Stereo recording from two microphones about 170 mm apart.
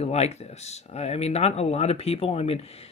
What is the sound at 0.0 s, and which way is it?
Speech, 40° left (ahead or behind).